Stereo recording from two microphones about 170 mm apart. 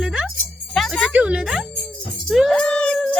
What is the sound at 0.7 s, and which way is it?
Music, centre (ahead or behind).